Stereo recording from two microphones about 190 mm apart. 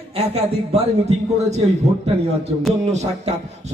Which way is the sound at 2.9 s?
35° right (ahead or behind).